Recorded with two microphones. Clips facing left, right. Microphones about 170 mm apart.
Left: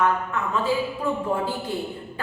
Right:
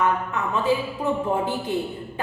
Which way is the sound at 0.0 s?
20° right (ahead or behind).